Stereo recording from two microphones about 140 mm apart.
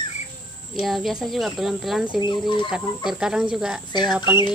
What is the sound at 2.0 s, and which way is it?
Speech, 35° left (ahead or behind).